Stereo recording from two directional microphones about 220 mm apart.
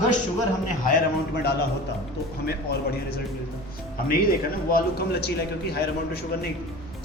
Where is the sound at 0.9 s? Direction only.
45° left (ahead or behind).